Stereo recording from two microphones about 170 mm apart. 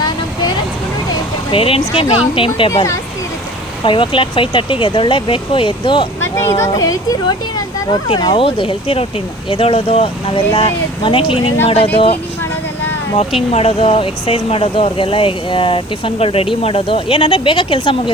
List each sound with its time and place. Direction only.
1.5 s speech: 35° left (ahead or behind)
3.8 s speech: 30° left (ahead or behind)
6.3 s speech: 15° left (ahead or behind); by 11.9 s 35° left (ahead or behind)
13.5 s speech: 35° left (ahead or behind)